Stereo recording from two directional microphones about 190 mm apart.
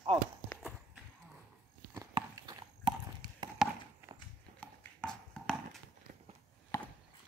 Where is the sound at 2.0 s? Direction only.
20° right (ahead or behind).